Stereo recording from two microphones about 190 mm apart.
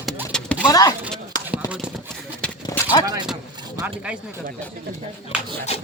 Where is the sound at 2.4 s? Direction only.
5° left (ahead or behind).